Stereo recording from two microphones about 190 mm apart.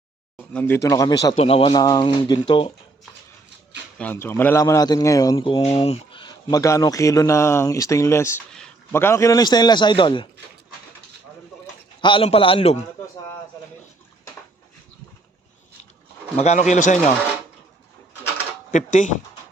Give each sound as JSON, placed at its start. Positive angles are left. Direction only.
{"t": 0.3, "sound": "speech", "side_deg": 10}
{"t": 1.4, "sound": "speech", "side_deg": 30}
{"t": 3.9, "sound": "a man's voice", "side_deg": 10}
{"t": 12.0, "sound": "speech", "side_deg": 30}
{"t": 16.4, "sound": "speech", "side_deg": 35}
{"t": 18.7, "sound": "speech", "side_deg": 40}